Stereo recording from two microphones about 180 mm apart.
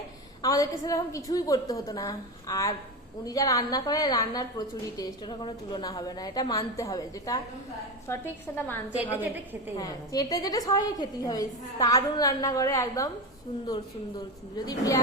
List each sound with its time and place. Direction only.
0.4 s a woman's voice: 20° left (ahead or behind)
14.5 s a woman's voice: 20° left (ahead or behind)